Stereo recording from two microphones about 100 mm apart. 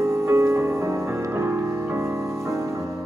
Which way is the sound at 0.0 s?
25° right (ahead or behind).